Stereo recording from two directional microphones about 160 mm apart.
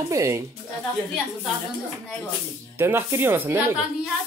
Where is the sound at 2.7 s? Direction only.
15° right (ahead or behind).